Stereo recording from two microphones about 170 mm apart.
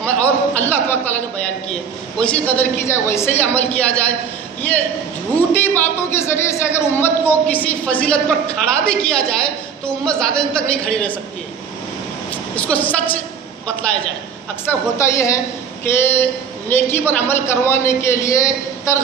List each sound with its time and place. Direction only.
0.0 s a sound: 10° left (ahead or behind)
1.7 s a woman's voice: 5° left (ahead or behind)
5.5 s a woman's voice: 10° left (ahead or behind)
12.5 s a woman's voice: 10° left (ahead or behind)
14.7 s a woman's voice: 15° left (ahead or behind)